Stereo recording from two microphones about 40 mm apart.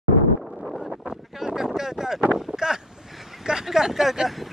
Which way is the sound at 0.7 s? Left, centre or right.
Centre.